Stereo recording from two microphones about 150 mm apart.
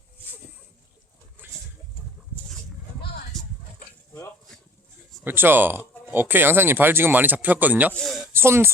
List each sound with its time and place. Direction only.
5.2 s speech: 15° right (ahead or behind)
7.9 s a sound: 5° left (ahead or behind)
8.3 s speech: 15° right (ahead or behind)